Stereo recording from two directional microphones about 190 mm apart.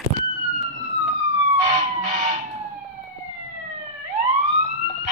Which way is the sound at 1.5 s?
35° right (ahead or behind).